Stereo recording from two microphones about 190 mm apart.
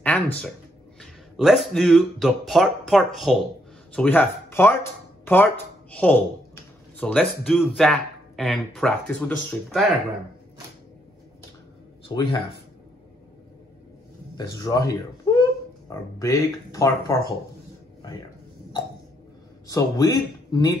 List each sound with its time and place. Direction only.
0.0 s speech: 5° left (ahead or behind)
14.3 s speech: 20° left (ahead or behind)
19.7 s speech: 20° left (ahead or behind)